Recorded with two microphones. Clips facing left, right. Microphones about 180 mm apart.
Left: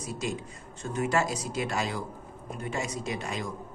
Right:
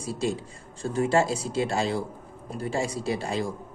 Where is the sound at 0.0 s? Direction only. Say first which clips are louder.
Right 5 dB; 30° right (ahead or behind).